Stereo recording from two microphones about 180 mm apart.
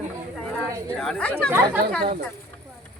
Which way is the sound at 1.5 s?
10° right (ahead or behind).